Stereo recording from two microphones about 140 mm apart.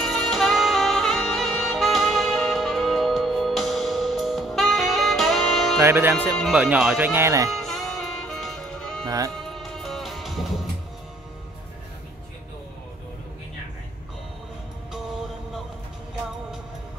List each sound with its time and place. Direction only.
0.0 s saxophone: centre (ahead or behind)
5.8 s speech: 15° right (ahead or behind)
7.5 s music: 5° left (ahead or behind)
9.0 s speech: 25° right (ahead or behind)
9.3 s music: centre (ahead or behind)
14.9 s music: 5° right (ahead or behind)